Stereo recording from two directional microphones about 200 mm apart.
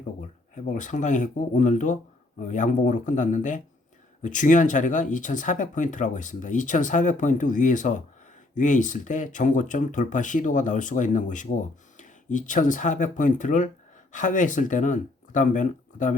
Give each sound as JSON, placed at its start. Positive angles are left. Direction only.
{"t": 0.2, "sound": "speech", "side_deg": 40}